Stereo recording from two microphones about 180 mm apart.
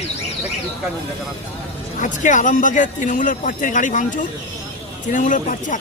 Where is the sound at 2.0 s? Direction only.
45° left (ahead or behind).